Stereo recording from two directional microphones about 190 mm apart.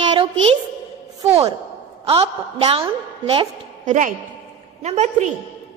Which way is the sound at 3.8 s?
40° right (ahead or behind).